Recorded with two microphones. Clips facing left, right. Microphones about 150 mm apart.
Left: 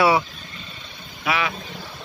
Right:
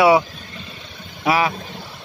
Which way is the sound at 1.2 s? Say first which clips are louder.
Right 6 dB; 35° right (ahead or behind).